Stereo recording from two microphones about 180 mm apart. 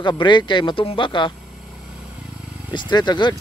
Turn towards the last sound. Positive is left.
turn(degrees=25)  # may be behind; listen again after turning